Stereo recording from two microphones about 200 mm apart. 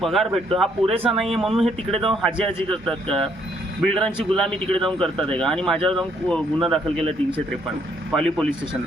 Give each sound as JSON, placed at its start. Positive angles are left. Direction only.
{"t": 0.0, "sound": "speech", "side_deg": 0}
{"t": 7.0, "sound": "speech", "side_deg": -25}
{"t": 8.1, "sound": "speech", "side_deg": 5}